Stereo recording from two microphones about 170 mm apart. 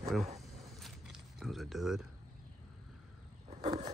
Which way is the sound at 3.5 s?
40° right (ahead or behind).